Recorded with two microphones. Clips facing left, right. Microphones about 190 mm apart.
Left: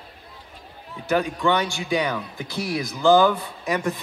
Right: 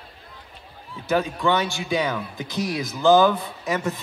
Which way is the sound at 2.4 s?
20° right (ahead or behind).